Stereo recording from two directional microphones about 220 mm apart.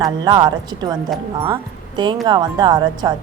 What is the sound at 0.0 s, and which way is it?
Speech, 20° right (ahead or behind).